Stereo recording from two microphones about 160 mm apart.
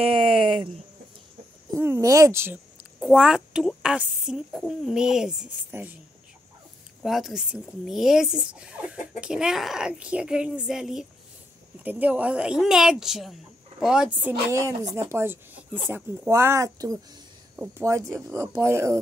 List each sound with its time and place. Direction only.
0.0 s a sound: 35° right (ahead or behind)
1.8 s speech: 20° right (ahead or behind)
3.0 s speech: 5° right (ahead or behind)
7.0 s speech: centre (ahead or behind)
14.5 s speech: 20° right (ahead or behind)